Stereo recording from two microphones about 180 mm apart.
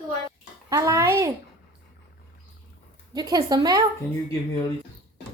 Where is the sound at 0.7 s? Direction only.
20° right (ahead or behind).